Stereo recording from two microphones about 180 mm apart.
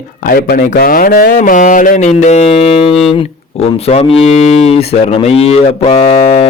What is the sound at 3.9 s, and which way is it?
Moo, 35° left (ahead or behind).